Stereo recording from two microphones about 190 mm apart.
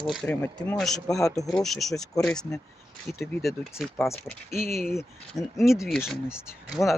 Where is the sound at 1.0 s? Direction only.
20° left (ahead or behind).